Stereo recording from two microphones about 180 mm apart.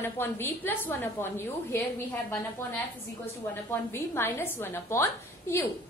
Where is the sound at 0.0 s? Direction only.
10° left (ahead or behind).